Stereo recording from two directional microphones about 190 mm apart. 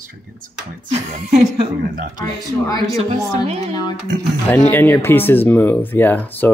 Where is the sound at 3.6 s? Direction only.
20° left (ahead or behind).